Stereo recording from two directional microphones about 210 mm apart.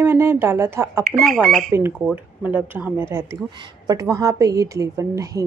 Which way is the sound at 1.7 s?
10° right (ahead or behind).